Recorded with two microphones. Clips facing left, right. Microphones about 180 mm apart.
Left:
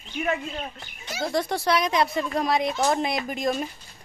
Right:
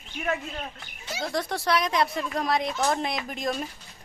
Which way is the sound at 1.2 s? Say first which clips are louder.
Left 4 dB; centre (ahead or behind).